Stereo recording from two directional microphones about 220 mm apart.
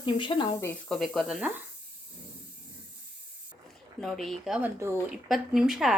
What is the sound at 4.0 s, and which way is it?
Speech, centre (ahead or behind).